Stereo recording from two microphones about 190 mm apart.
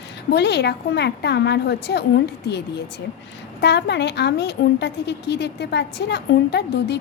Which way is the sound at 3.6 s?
65° left (ahead or behind).